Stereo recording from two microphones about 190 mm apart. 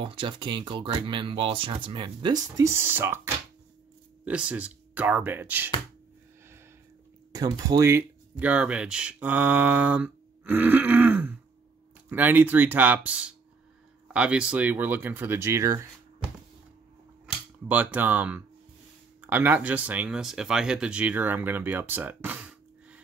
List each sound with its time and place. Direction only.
0.0 s speech: 25° right (ahead or behind)
4.2 s speech: 5° right (ahead or behind)
7.3 s speech: 20° right (ahead or behind)
17.6 s speech: 10° right (ahead or behind)